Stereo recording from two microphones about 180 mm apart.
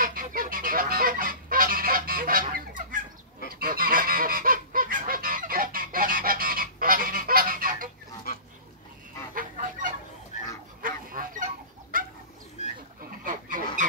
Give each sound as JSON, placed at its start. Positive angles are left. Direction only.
{"t": 0.0, "sound": "goose", "side_deg": -50}
{"t": 9.3, "sound": "fowl", "side_deg": -50}
{"t": 10.8, "sound": "goose", "side_deg": -50}
{"t": 13.2, "sound": "goose", "side_deg": -50}